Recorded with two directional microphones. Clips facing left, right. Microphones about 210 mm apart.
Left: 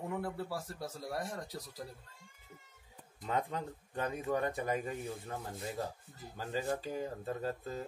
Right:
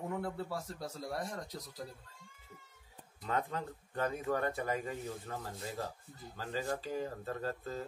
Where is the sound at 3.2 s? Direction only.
15° left (ahead or behind).